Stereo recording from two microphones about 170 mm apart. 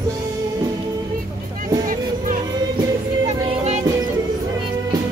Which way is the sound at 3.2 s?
40° right (ahead or behind).